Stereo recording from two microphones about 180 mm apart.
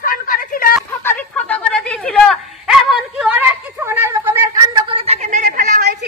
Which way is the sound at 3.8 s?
15° right (ahead or behind).